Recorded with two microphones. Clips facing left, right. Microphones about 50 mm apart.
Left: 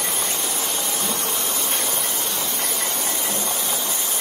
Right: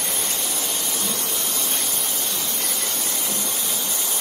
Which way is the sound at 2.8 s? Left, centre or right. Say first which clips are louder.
Left 3 dB; left.